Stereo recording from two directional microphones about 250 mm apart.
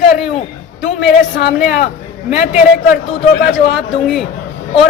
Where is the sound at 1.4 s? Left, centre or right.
Left.